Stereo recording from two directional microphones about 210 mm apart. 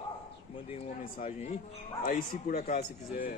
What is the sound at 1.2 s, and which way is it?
A man's voice, 35° left (ahead or behind).